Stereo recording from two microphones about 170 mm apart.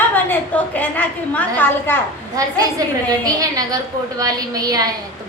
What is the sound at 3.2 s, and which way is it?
A woman's voice, 20° right (ahead or behind).